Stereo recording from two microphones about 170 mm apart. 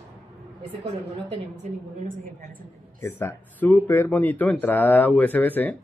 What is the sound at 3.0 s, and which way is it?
Speech, 15° left (ahead or behind).